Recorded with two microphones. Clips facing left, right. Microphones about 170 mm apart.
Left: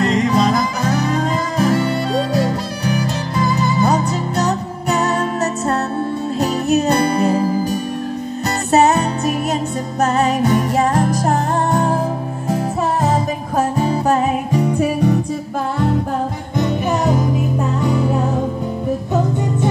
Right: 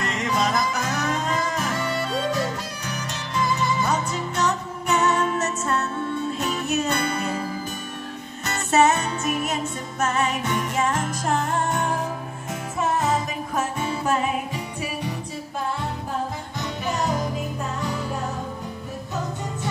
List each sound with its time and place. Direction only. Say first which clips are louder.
0.0 s music: left 9 dB; 35° left (ahead or behind)